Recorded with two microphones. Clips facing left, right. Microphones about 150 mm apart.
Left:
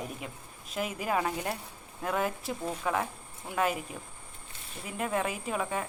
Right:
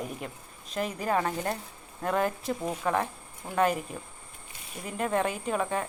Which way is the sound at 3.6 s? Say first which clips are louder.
Right 4 dB; centre (ahead or behind).